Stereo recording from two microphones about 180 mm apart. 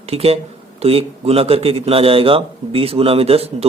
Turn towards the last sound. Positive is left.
turn(degrees=-35)  # may be behind; listen again after turning